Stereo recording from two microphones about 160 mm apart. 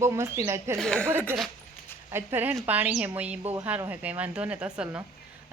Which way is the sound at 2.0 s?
15° right (ahead or behind).